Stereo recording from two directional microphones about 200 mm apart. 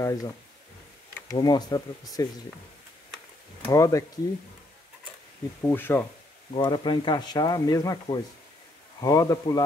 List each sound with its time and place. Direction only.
0.0 s speech: 20° left (ahead or behind)
1.3 s speech: 20° left (ahead or behind)
3.6 s speech: 15° left (ahead or behind)
5.6 s speech: 10° left (ahead or behind)
6.5 s speech: 25° left (ahead or behind)